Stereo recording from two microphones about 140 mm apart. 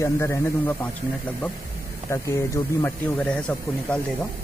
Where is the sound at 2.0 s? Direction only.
20° left (ahead or behind).